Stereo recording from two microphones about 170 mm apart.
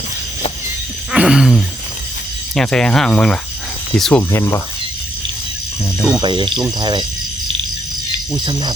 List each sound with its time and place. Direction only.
1.1 s a sound: 5° right (ahead or behind)
2.6 s speech: 5° left (ahead or behind)
4.2 s speech: 15° left (ahead or behind)
6.2 s speech: 25° right (ahead or behind)